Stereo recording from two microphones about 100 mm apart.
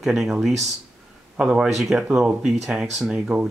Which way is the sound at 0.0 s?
Centre (ahead or behind).